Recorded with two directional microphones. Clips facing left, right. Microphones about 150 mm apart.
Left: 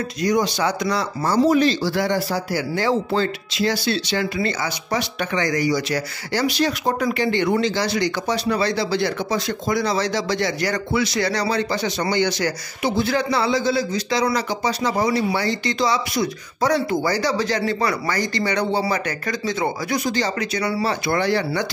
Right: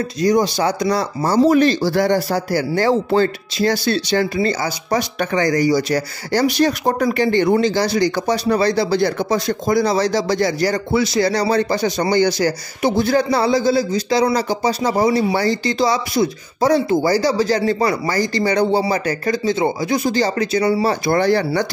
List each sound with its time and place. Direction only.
0.2 s speech: 35° right (ahead or behind)
1.5 s speech: 55° right (ahead or behind)